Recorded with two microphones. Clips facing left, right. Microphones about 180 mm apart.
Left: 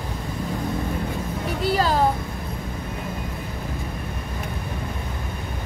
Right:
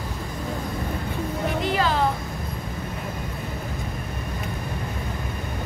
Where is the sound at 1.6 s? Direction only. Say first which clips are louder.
Left 4 dB; 40° left (ahead or behind).